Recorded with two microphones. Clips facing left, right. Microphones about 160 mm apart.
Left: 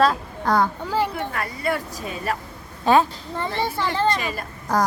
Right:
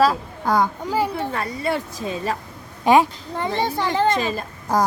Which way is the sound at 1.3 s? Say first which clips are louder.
Right 2 dB; 25° right (ahead or behind).